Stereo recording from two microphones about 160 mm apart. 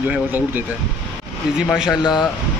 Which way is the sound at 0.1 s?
10° right (ahead or behind).